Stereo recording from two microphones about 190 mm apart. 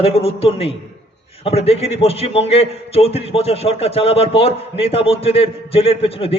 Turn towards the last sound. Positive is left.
turn(degrees=30)  # may be behind; listen again after turning